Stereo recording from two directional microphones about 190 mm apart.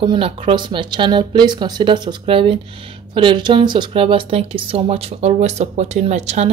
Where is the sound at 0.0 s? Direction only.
25° right (ahead or behind).